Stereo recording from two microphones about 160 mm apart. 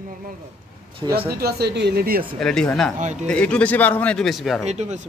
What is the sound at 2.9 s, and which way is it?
Speech, 50° right (ahead or behind).